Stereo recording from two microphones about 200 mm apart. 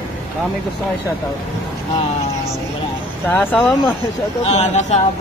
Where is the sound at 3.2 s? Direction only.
5° left (ahead or behind).